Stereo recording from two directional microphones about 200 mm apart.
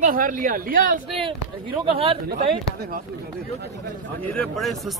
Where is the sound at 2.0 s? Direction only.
30° right (ahead or behind).